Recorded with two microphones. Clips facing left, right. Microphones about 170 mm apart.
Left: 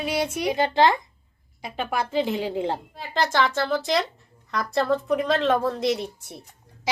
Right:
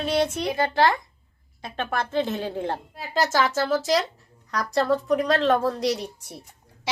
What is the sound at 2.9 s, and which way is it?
Speech, 5° right (ahead or behind).